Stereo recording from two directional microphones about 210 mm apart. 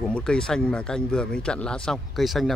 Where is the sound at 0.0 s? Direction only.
5° left (ahead or behind).